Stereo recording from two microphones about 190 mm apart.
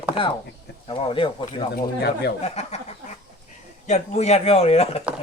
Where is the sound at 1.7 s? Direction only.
55° left (ahead or behind).